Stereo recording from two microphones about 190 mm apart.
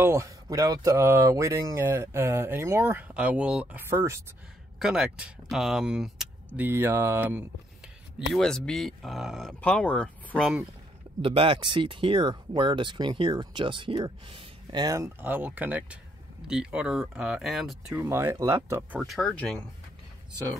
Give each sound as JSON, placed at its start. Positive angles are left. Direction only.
{"t": 0.0, "sound": "speech", "side_deg": -15}
{"t": 4.7, "sound": "speech", "side_deg": -5}
{"t": 8.3, "sound": "speech", "side_deg": 5}
{"t": 11.2, "sound": "speech", "side_deg": -25}
{"t": 18.9, "sound": "speech", "side_deg": 0}